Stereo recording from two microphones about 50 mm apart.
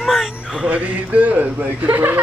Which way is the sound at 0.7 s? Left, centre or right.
Right.